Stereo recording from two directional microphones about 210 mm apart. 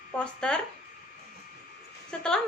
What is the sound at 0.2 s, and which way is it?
Speech, 5° left (ahead or behind).